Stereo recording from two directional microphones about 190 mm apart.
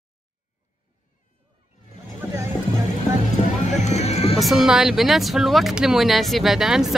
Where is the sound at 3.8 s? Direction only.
35° left (ahead or behind).